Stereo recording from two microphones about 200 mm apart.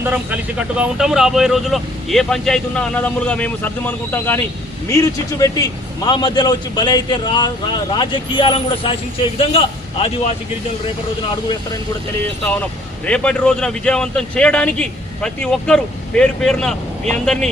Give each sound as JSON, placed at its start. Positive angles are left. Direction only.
{"t": 0.0, "sound": "a man's voice", "side_deg": -10}
{"t": 13.1, "sound": "a man's voice", "side_deg": 5}